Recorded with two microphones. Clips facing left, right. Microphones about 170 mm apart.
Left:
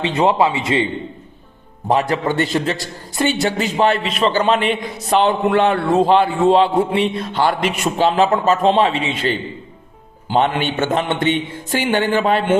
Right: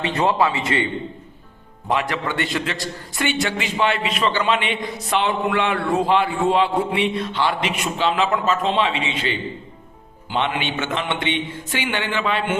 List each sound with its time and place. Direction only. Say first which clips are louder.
0.0 s a man's voice: left 4 dB; 20° left (ahead or behind)
1.9 s a man's voice: left 6 dB; 35° left (ahead or behind)